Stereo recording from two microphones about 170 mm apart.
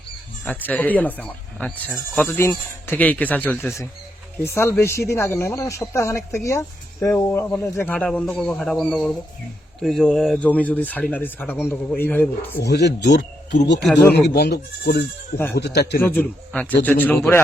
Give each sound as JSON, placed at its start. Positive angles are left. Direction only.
{"t": 0.7, "sound": "speech", "side_deg": 10}
{"t": 12.5, "sound": "speech", "side_deg": 75}
{"t": 13.8, "sound": "speech", "side_deg": 10}
{"t": 14.1, "sound": "speech", "side_deg": 75}
{"t": 16.0, "sound": "speech", "side_deg": 10}